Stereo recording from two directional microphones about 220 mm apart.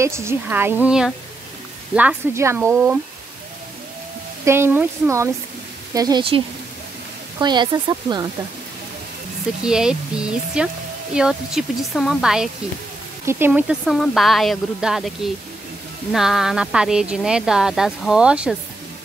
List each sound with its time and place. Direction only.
0.0 s speech: 10° right (ahead or behind)
4.5 s speech: 10° right (ahead or behind)
9.7 s speech: 5° right (ahead or behind)